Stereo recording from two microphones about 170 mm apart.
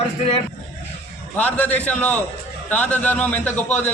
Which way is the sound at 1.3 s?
10° left (ahead or behind).